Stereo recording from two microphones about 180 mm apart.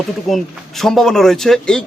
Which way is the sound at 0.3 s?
Centre (ahead or behind).